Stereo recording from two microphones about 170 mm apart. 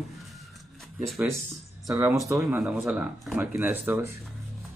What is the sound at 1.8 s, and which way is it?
Speech, 20° right (ahead or behind).